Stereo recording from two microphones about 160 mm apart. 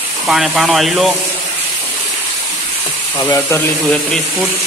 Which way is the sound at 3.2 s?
20° left (ahead or behind).